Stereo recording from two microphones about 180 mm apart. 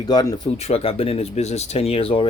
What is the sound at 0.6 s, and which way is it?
Speech, 35° left (ahead or behind).